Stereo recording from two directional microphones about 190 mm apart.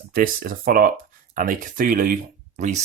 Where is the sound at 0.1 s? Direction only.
50° right (ahead or behind).